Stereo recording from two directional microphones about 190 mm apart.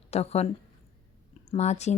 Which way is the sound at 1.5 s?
35° left (ahead or behind).